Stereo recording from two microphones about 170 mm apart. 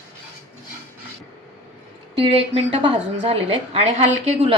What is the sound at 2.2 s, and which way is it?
Speech, 35° right (ahead or behind).